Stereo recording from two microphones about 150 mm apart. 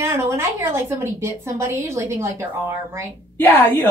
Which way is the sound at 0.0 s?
20° right (ahead or behind).